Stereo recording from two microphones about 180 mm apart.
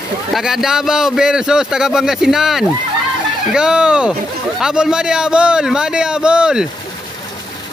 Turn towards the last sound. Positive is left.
turn(degrees=-5)  # may be behind; listen again after turning